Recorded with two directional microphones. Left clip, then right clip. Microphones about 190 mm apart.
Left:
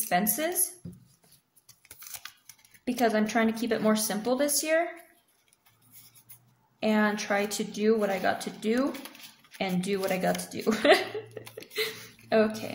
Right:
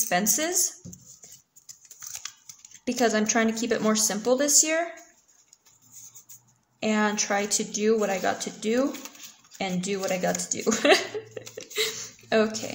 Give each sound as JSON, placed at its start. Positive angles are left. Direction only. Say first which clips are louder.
{"t": 0.1, "sound": "speech", "louder": "right 1 dB", "side_deg": -15}
{"t": 2.8, "sound": "speech", "louder": "right 2 dB", "side_deg": -15}
{"t": 6.8, "sound": "speech", "louder": "right 1 dB", "side_deg": -10}